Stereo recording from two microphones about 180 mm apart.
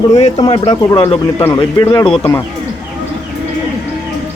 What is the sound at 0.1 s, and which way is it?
Speech, 35° left (ahead or behind).